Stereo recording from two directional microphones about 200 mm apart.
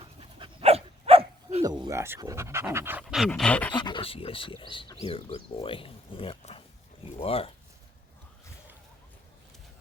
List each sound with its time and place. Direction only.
0.0 s dog: 25° right (ahead or behind)
1.6 s speech: 20° right (ahead or behind)
3.0 s dog: centre (ahead or behind)
3.7 s speech: 25° left (ahead or behind)